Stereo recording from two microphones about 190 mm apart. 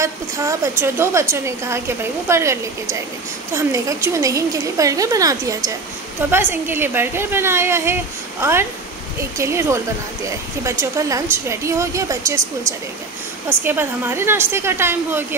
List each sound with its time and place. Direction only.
0.0 s a woman's voice: 15° right (ahead or behind)